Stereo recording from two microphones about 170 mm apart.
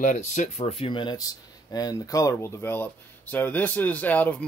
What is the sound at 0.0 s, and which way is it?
Speech, 45° left (ahead or behind).